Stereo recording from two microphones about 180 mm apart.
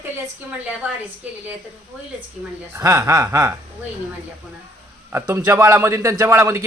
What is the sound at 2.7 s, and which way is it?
Speech, 15° right (ahead or behind).